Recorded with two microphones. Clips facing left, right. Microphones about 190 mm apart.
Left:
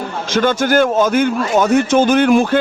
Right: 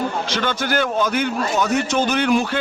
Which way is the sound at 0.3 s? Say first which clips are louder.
Left 8 dB; 45° left (ahead or behind).